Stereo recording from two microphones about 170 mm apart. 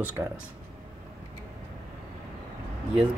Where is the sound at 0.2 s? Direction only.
15° right (ahead or behind).